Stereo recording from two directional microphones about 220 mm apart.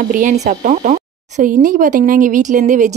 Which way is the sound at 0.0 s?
35° right (ahead or behind).